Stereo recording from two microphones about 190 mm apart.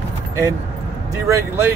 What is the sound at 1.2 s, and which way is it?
Speech, 15° right (ahead or behind).